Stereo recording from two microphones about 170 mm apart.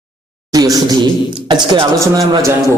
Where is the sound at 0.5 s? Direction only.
20° right (ahead or behind).